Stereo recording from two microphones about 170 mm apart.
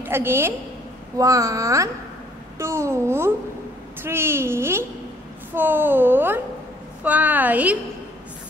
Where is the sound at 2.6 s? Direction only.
15° right (ahead or behind).